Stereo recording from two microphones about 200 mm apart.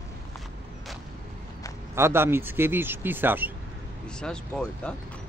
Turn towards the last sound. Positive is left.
turn(degrees=5)  # may be behind; listen again after turning